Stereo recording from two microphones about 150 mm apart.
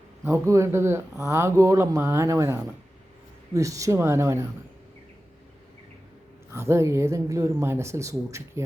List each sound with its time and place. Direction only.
0.3 s speech: 20° right (ahead or behind)
6.5 s speech: 15° right (ahead or behind)